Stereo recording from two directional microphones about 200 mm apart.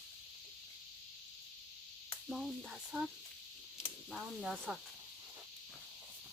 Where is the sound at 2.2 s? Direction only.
Centre (ahead or behind).